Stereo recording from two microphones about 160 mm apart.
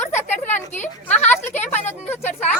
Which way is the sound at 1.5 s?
10° left (ahead or behind).